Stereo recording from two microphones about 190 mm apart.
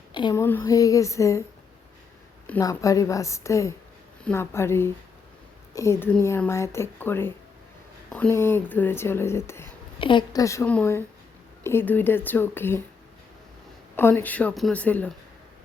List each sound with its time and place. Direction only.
0.1 s a sound: 25° left (ahead or behind)
0.4 s speech: 15° left (ahead or behind)
2.5 s speech: 15° left (ahead or behind)
10.0 s speech: 25° left (ahead or behind)
13.9 s speech: 10° left (ahead or behind)